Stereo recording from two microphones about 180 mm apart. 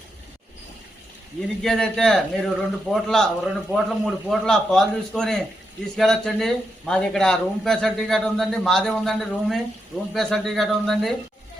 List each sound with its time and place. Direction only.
1.4 s a man's voice: centre (ahead or behind)